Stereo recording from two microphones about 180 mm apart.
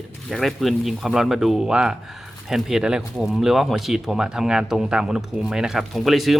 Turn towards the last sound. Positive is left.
turn(degrees=0)  # may be behind; listen again after turning